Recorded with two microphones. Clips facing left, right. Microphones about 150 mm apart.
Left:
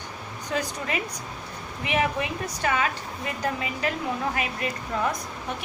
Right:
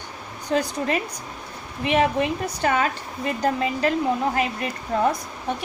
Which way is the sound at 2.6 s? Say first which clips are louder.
Right 3 dB; 40° right (ahead or behind).